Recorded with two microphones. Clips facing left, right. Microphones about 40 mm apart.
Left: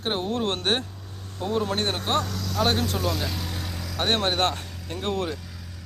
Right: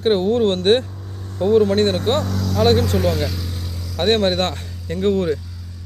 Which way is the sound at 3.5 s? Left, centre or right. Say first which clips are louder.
Right 1 dB; left.